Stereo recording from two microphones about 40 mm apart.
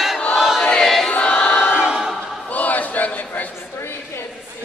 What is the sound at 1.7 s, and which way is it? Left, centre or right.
Choir, centre.